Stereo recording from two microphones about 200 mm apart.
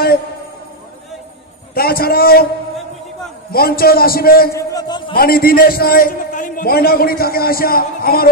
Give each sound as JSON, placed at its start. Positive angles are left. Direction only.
{"t": 1.7, "sound": "a man's voice", "side_deg": 50}
{"t": 3.5, "sound": "a man's voice", "side_deg": 50}
{"t": 4.6, "sound": "a man's voice", "side_deg": 20}
{"t": 5.1, "sound": "a man's voice", "side_deg": 50}